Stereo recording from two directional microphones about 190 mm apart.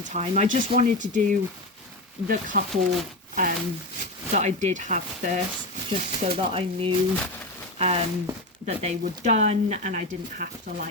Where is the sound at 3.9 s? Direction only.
40° right (ahead or behind).